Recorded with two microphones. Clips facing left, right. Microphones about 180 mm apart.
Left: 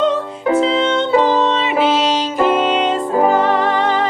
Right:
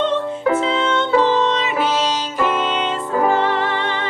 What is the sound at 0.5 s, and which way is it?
Music, 30° left (ahead or behind).